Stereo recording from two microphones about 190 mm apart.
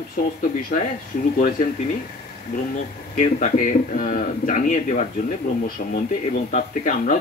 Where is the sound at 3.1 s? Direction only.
40° left (ahead or behind).